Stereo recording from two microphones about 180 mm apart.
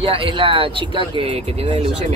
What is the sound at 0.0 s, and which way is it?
Speech, 30° right (ahead or behind).